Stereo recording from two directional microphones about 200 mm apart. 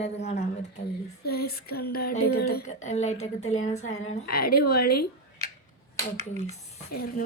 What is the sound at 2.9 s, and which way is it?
Speech, 35° left (ahead or behind).